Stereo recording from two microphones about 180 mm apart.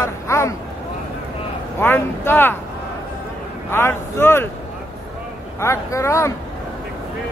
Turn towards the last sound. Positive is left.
turn(degrees=15)  # may be behind; listen again after turning